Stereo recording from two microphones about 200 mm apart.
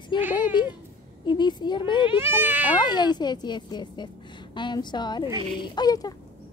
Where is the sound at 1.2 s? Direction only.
20° left (ahead or behind).